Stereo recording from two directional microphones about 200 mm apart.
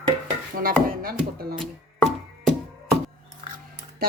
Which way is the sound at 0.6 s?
45° right (ahead or behind).